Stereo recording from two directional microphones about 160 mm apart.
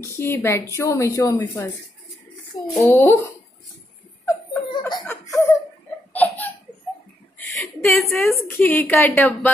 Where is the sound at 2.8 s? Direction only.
15° left (ahead or behind).